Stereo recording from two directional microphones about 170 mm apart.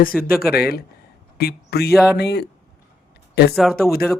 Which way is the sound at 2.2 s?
75° left (ahead or behind).